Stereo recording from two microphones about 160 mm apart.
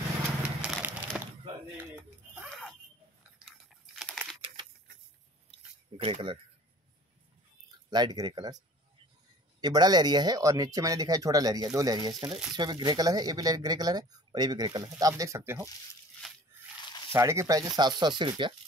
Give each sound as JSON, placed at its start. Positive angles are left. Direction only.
{"t": 0.6, "sound": "a sound", "side_deg": -5}
{"t": 3.4, "sound": "a sound", "side_deg": 0}
{"t": 5.9, "sound": "speech", "side_deg": -40}
{"t": 7.9, "sound": "speech", "side_deg": -25}
{"t": 9.6, "sound": "speech", "side_deg": -25}
{"t": 17.1, "sound": "speech", "side_deg": -15}